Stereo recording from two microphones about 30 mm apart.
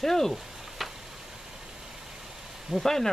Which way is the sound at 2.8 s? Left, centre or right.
Centre.